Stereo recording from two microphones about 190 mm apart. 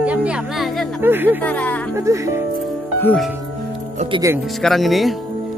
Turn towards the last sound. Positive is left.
turn(degrees=0)  # may be behind; listen again after turning